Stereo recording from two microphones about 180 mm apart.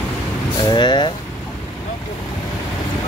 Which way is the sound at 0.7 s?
25° left (ahead or behind).